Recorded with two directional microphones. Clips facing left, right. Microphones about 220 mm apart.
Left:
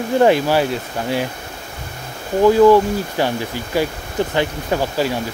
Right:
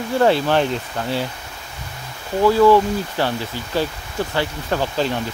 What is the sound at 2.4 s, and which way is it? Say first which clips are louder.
Speech: left 3 dB; 15° left (ahead or behind).